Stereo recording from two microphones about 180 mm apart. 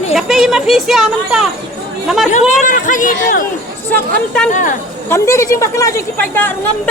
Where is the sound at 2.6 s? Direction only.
45° left (ahead or behind).